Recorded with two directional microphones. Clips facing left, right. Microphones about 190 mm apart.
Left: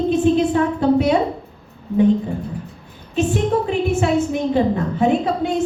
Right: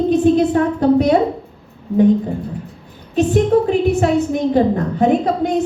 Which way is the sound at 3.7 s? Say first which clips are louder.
Right 3 dB; 40° right (ahead or behind).